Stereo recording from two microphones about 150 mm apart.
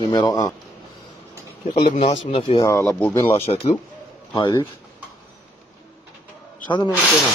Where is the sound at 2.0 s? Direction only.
35° left (ahead or behind).